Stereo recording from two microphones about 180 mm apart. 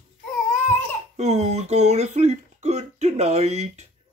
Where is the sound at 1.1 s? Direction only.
40° right (ahead or behind).